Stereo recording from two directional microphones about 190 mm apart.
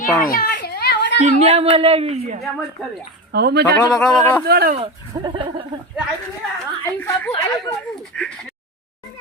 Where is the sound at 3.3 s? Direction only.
60° right (ahead or behind).